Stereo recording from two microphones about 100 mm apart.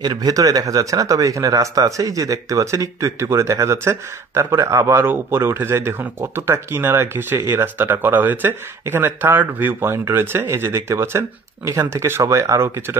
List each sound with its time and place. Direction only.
0.0 s speech: 40° right (ahead or behind)